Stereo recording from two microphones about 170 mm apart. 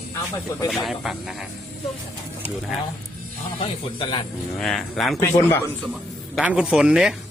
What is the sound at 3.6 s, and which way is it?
Speech, 30° left (ahead or behind).